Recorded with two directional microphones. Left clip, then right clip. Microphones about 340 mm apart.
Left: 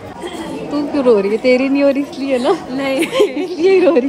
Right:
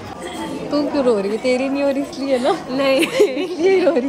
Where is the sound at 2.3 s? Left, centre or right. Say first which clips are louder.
Left 2 dB; centre.